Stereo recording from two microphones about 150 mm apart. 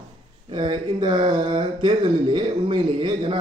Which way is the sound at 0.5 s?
30° right (ahead or behind).